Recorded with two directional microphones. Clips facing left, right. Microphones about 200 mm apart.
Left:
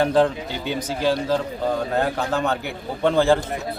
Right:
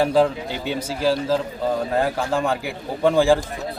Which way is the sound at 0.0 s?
5° right (ahead or behind).